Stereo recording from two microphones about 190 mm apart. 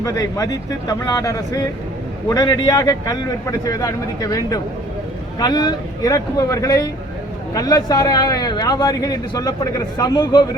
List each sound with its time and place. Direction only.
0.0 s a man's voice: 15° left (ahead or behind)